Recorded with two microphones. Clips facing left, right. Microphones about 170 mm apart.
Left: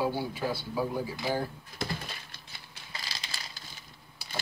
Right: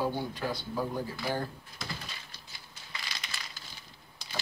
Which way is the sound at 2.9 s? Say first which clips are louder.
Even; 35° left (ahead or behind).